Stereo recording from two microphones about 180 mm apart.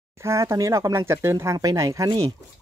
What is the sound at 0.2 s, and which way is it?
Speech, 15° right (ahead or behind).